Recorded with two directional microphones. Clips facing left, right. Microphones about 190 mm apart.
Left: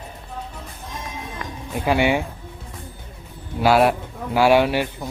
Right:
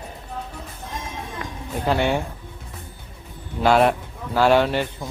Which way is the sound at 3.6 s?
5° left (ahead or behind).